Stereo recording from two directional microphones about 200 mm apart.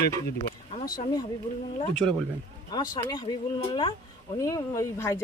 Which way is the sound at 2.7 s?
20° left (ahead or behind).